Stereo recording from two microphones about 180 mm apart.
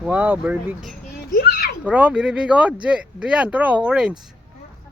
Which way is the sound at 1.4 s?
65° left (ahead or behind).